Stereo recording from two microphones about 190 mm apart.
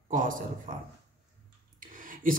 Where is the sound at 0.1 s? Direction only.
45° right (ahead or behind).